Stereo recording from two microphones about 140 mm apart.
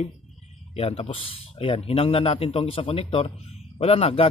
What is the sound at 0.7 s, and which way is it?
Speech, 45° left (ahead or behind).